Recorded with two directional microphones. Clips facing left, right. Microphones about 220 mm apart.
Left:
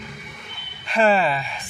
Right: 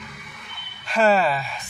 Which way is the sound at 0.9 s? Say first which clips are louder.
Even; centre (ahead or behind).